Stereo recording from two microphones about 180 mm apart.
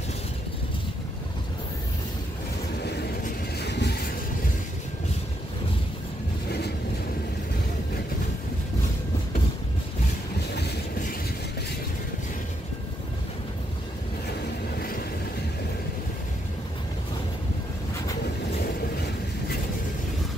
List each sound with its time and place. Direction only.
2.8 s vehicle: 65° left (ahead or behind)
10.5 s train: 65° left (ahead or behind)
14.8 s vehicle: 55° left (ahead or behind)